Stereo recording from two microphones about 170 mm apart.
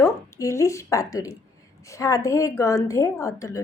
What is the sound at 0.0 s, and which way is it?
A woman's voice, 20° left (ahead or behind).